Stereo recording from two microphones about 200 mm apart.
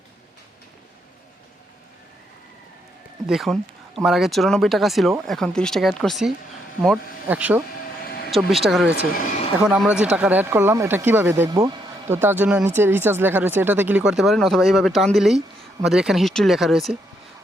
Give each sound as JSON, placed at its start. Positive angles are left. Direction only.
{"t": 3.2, "sound": "speech", "side_deg": 0}
{"t": 8.0, "sound": "vehicle", "side_deg": 50}
{"t": 8.3, "sound": "speech", "side_deg": 0}
{"t": 9.1, "sound": "a sound", "side_deg": 40}
{"t": 9.6, "sound": "speech", "side_deg": -5}